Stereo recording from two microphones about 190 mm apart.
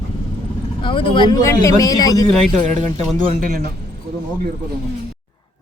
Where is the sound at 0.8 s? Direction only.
25° left (ahead or behind).